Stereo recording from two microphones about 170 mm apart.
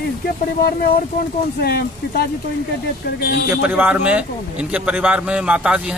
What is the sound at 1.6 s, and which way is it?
Speech, 70° left (ahead or behind).